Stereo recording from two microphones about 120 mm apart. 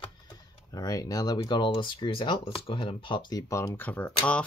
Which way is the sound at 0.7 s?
30° left (ahead or behind).